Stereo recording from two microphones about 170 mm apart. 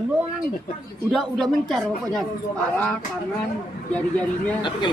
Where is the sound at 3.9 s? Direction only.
10° left (ahead or behind).